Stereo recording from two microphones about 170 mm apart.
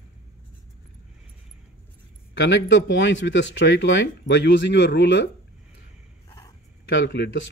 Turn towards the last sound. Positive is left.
turn(degrees=90)